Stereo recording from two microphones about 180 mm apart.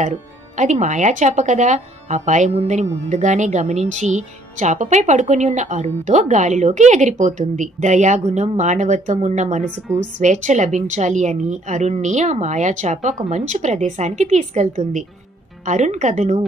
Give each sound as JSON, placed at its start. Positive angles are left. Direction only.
{"t": 0.0, "sound": "speech", "side_deg": -40}